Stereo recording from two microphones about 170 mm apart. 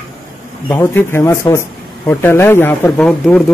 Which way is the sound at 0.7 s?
15° left (ahead or behind).